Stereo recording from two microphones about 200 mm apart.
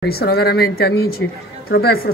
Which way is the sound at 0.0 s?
50° left (ahead or behind).